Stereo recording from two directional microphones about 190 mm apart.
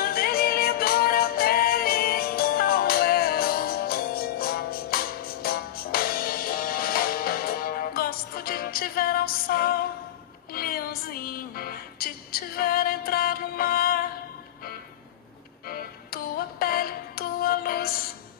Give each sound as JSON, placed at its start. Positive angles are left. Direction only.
{"t": 0.0, "sound": "music", "side_deg": 50}
{"t": 15.6, "sound": "music", "side_deg": 50}